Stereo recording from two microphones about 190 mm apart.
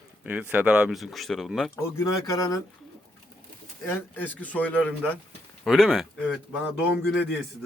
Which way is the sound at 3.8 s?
10° left (ahead or behind).